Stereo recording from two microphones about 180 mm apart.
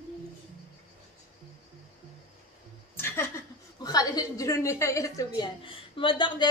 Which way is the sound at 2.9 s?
15° left (ahead or behind).